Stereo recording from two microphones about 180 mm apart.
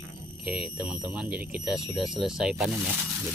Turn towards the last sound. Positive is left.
turn(degrees=0)  # may be behind; listen again after turning